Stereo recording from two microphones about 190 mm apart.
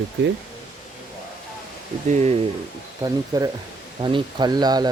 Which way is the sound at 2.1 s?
35° right (ahead or behind).